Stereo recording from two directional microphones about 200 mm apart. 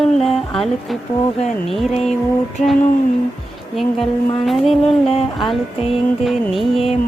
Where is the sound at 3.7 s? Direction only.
Centre (ahead or behind).